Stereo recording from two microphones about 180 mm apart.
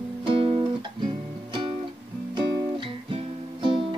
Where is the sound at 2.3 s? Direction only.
25° right (ahead or behind).